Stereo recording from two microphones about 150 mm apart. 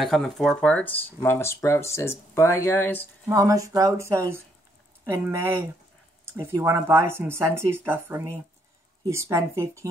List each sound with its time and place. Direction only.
0.0 s speech: centre (ahead or behind)
3.3 s speech: 20° right (ahead or behind)